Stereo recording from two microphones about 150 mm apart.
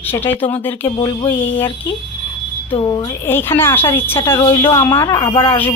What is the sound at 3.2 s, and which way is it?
A woman's voice, 15° left (ahead or behind).